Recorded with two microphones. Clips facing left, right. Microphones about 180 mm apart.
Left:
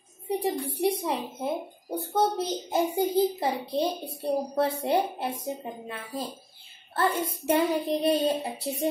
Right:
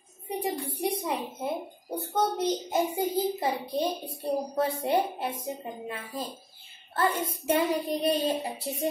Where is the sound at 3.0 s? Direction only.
25° left (ahead or behind).